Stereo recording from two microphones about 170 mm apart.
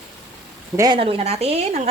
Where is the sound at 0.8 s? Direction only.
30° right (ahead or behind).